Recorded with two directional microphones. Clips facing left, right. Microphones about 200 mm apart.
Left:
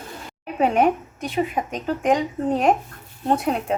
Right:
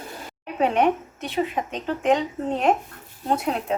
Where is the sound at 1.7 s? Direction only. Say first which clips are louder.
Even; 5° left (ahead or behind).